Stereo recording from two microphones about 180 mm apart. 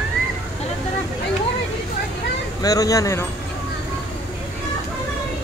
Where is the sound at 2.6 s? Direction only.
20° left (ahead or behind).